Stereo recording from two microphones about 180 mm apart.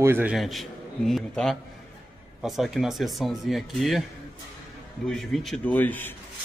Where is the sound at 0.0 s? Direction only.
10° right (ahead or behind).